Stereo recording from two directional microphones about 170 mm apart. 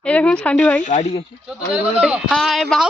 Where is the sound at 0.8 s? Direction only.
45° left (ahead or behind).